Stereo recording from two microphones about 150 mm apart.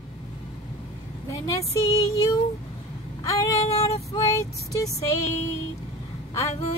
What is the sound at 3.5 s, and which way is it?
Female singing, 40° left (ahead or behind).